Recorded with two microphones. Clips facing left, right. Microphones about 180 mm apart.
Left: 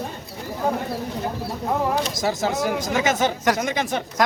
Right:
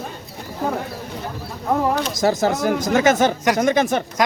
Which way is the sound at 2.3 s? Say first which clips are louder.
Right 4 dB; 45° right (ahead or behind).